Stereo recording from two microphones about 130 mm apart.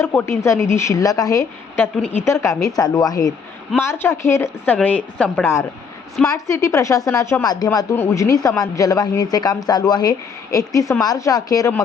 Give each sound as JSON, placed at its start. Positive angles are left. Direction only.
{"t": 0.0, "sound": "a woman's voice", "side_deg": 15}
{"t": 1.8, "sound": "speech", "side_deg": 15}